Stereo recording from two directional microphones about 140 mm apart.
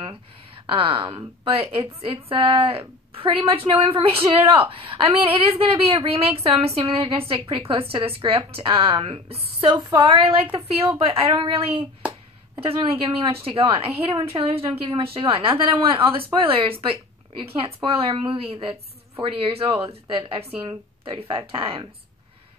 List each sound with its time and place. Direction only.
0.7 s a woman's voice: 40° right (ahead or behind)
10.5 s a woman's voice: 40° right (ahead or behind)
21.0 s a woman's voice: 40° right (ahead or behind)